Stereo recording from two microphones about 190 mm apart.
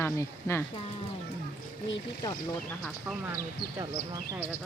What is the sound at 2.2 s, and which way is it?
Speech, 20° left (ahead or behind).